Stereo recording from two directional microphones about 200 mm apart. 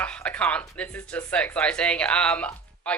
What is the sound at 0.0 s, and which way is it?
A woman's voice, 5° left (ahead or behind).